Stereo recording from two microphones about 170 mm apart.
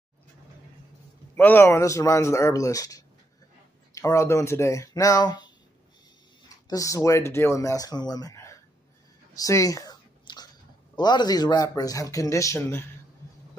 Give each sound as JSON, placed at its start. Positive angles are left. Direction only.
{"t": 1.3, "sound": "speech", "side_deg": 15}
{"t": 6.5, "sound": "speech", "side_deg": 20}
{"t": 9.3, "sound": "a sound", "side_deg": 20}
{"t": 11.0, "sound": "speech", "side_deg": 25}